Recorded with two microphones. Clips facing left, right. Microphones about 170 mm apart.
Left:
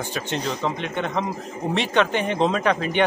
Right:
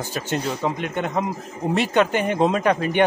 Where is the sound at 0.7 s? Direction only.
45° right (ahead or behind).